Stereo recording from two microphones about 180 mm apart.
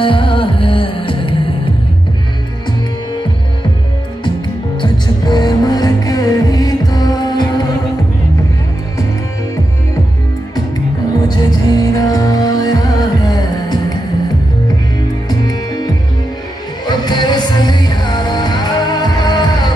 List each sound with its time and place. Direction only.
0.0 s music: 30° left (ahead or behind)
4.7 s music: 25° left (ahead or behind)
11.2 s music: 20° left (ahead or behind)
15.2 s music: 20° left (ahead or behind)